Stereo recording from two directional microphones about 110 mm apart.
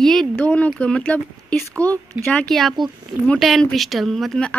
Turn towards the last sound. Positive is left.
turn(degrees=5)  # may be behind; listen again after turning